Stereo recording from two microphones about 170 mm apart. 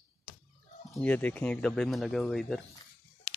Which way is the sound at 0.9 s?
5° left (ahead or behind).